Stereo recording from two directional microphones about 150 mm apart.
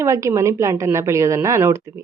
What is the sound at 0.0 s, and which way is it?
A woman's voice, 20° right (ahead or behind).